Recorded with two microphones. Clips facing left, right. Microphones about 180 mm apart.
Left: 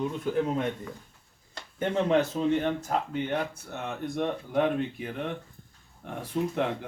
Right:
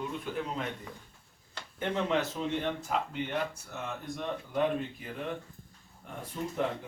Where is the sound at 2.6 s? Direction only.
50° left (ahead or behind).